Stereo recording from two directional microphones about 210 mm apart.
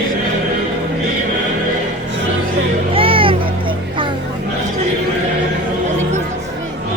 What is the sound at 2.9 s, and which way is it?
Music, 25° right (ahead or behind).